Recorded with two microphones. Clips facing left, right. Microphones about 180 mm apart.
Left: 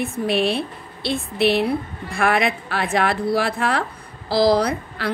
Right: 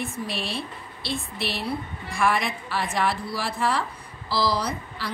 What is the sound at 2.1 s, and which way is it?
A woman's voice, 65° left (ahead or behind).